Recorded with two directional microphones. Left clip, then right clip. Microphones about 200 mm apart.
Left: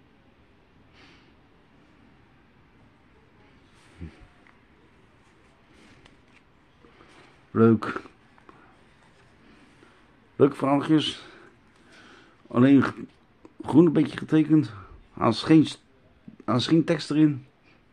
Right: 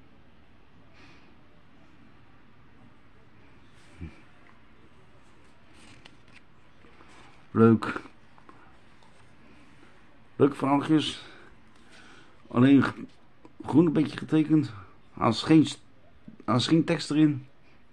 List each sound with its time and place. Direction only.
7.5 s speech: 5° left (ahead or behind)
10.3 s a man's voice: 15° left (ahead or behind)
12.0 s a sound: 15° left (ahead or behind)
12.4 s speech: 10° left (ahead or behind)